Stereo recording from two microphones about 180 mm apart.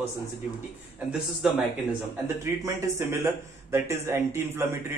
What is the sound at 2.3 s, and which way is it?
Speech, 15° right (ahead or behind).